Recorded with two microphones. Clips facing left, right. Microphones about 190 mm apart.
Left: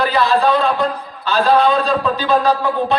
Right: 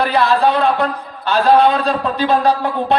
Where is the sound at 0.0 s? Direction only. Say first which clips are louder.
Right 1 dB; 60° right (ahead or behind).